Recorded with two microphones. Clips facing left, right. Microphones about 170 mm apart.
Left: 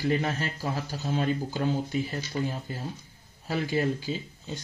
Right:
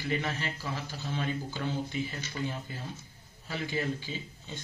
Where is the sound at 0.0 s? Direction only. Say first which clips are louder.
Left 6 dB; 45° left (ahead or behind).